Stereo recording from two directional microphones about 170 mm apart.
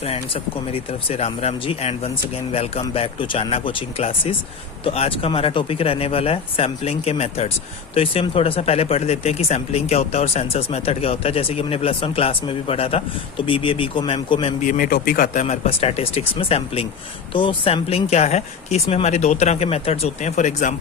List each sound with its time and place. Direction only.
0.7 s speech: 35° left (ahead or behind)
14.6 s a man's voice: 50° left (ahead or behind)
15.4 s speech: 35° left (ahead or behind)